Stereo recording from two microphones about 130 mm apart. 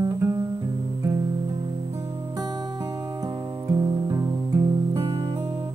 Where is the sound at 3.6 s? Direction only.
25° right (ahead or behind).